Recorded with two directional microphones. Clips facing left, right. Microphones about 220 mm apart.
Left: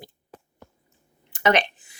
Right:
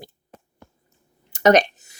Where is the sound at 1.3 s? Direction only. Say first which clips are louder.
Right 6 dB; 40° right (ahead or behind).